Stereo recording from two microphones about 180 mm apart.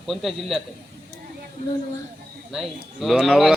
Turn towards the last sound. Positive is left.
turn(degrees=0)  # may be behind; listen again after turning